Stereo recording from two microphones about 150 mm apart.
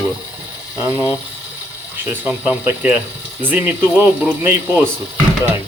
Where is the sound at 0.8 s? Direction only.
15° right (ahead or behind).